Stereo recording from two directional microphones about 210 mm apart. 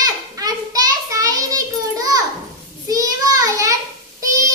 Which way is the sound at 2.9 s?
15° right (ahead or behind).